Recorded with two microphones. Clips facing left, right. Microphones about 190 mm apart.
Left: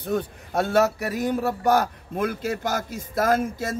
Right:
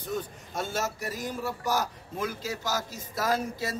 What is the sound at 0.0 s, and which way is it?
A man's voice, 60° left (ahead or behind).